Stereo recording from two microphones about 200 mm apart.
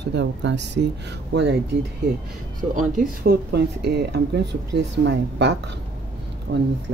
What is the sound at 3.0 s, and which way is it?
Speech, 55° right (ahead or behind).